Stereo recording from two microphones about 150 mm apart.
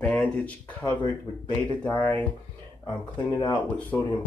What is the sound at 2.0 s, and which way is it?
Speech, 10° left (ahead or behind).